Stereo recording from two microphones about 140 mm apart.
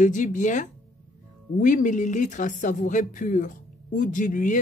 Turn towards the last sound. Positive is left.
turn(degrees=65)  # may be behind; listen again after turning